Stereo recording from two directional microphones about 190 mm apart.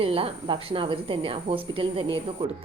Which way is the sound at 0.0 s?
30° right (ahead or behind).